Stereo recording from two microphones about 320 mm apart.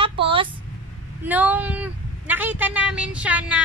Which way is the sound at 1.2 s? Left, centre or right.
Centre.